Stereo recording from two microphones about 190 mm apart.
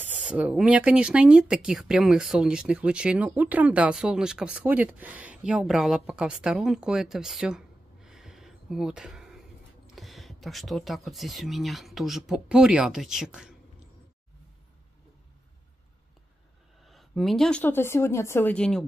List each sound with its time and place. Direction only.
0.0 s speech: 10° right (ahead or behind)
16.8 s speech: centre (ahead or behind)